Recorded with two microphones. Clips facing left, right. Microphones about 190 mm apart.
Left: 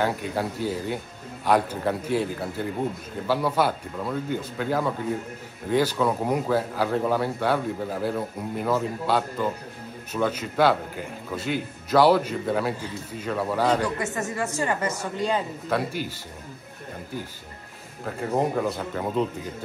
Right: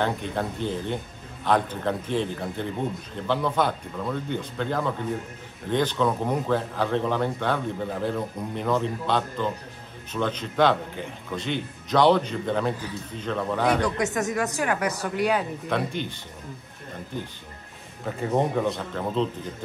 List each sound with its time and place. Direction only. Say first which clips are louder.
0.0 s a man's voice: left 1 dB; 5° left (ahead or behind)
13.9 s speech: right 3 dB; 85° right
14.6 s speech: left 2 dB; 90° right
15.7 s a man's voice: left 1 dB; 5° left (ahead or behind)
18.0 s a man's voice: even; centre (ahead or behind)